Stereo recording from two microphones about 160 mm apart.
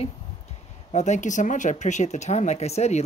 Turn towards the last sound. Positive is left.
turn(degrees=40)  # may be behind; listen again after turning